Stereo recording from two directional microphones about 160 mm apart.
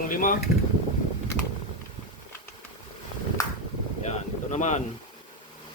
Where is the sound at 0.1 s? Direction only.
60° left (ahead or behind).